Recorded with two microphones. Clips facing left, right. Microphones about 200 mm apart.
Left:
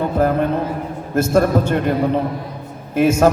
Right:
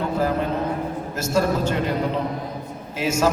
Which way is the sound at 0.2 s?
55° left (ahead or behind).